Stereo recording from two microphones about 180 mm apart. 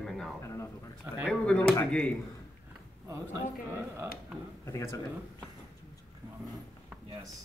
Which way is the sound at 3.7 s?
15° right (ahead or behind).